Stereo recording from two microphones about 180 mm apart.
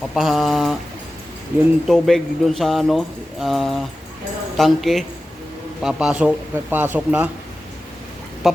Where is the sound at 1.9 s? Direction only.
Centre (ahead or behind).